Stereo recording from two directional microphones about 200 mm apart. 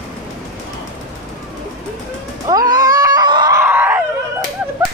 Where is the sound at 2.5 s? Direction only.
20° right (ahead or behind).